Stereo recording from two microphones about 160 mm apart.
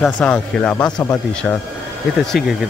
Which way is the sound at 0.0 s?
5° left (ahead or behind).